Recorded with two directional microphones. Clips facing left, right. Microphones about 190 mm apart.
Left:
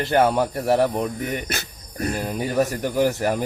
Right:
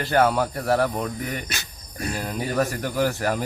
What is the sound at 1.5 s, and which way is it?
Speech, 55° left (ahead or behind).